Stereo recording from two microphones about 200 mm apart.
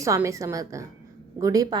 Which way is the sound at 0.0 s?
15° right (ahead or behind).